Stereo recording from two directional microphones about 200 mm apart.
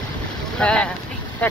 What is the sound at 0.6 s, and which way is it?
Speech, 5° left (ahead or behind).